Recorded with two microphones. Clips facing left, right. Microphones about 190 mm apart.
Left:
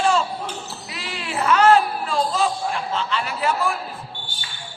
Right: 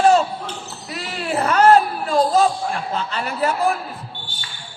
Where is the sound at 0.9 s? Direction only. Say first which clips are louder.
Right 8 dB; 45° right (ahead or behind).